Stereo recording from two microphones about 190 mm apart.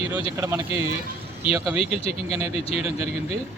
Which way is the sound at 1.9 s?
30° left (ahead or behind).